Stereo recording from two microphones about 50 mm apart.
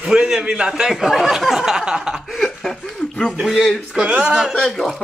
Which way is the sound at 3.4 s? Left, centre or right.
Centre.